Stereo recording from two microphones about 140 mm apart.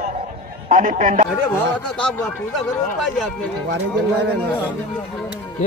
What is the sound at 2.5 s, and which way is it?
Speech, centre (ahead or behind).